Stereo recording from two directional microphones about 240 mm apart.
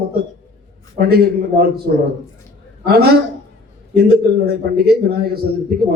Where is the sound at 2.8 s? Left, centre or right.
Right.